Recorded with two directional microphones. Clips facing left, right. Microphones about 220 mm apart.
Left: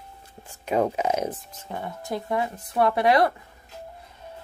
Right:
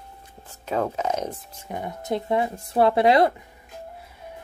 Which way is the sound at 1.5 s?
15° right (ahead or behind).